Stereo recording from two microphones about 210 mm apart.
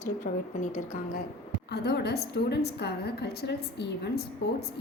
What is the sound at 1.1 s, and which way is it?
A woman's voice, 45° left (ahead or behind).